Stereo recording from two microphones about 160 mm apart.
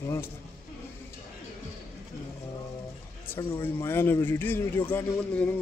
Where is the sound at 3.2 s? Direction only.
15° left (ahead or behind).